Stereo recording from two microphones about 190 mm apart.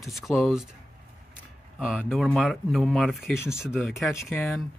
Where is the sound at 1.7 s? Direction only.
Centre (ahead or behind).